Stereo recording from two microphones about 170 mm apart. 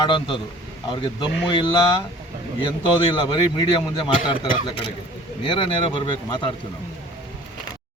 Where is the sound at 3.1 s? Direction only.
30° left (ahead or behind).